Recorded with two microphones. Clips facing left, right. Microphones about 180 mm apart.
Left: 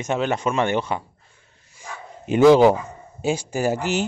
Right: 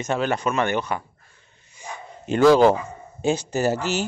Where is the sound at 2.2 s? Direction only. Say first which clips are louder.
Left 2 dB; 10° left (ahead or behind).